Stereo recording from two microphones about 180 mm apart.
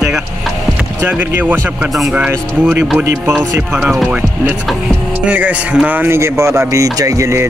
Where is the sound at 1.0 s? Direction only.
10° right (ahead or behind).